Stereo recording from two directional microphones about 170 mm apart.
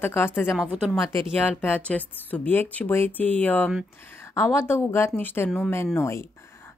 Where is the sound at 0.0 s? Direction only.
15° left (ahead or behind).